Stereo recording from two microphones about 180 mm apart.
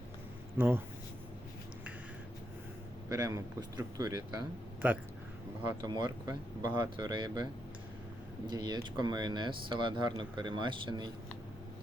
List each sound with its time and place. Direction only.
3.1 s speech: 15° right (ahead or behind)
4.8 s speech: 10° right (ahead or behind)
5.8 s speech: 25° right (ahead or behind)
8.4 s speech: 25° right (ahead or behind)